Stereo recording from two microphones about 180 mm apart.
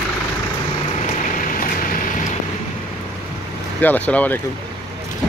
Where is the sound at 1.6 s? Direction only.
50° left (ahead or behind).